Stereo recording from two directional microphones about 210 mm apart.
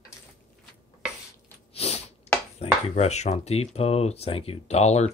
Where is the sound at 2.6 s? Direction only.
30° left (ahead or behind).